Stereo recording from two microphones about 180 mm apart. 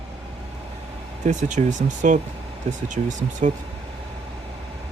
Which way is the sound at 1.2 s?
45° right (ahead or behind).